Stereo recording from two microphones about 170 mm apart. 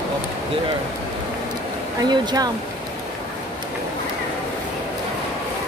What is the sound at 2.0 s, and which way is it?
Speech, 25° right (ahead or behind).